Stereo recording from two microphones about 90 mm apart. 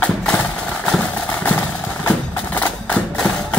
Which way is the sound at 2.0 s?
20° left (ahead or behind).